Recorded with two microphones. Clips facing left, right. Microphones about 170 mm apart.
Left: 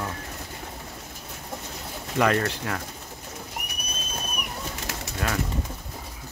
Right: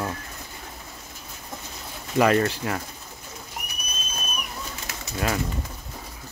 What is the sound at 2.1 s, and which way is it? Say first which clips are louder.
Speech: right 3 dB; 5° right (ahead or behind).